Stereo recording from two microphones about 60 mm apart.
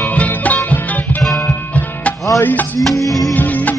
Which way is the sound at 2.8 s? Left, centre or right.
Centre.